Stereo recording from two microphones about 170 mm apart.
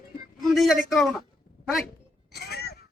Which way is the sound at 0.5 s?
Centre (ahead or behind).